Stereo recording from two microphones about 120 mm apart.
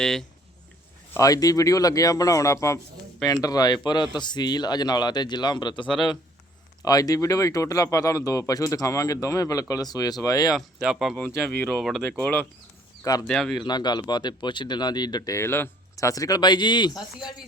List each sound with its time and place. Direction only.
0.0 s speech: 5° left (ahead or behind)
1.1 s speech: 30° left (ahead or behind)
10.5 s speech: 5° right (ahead or behind)
12.1 s speech: 15° left (ahead or behind)
13.2 s speech: centre (ahead or behind)
13.7 s speech: 35° left (ahead or behind)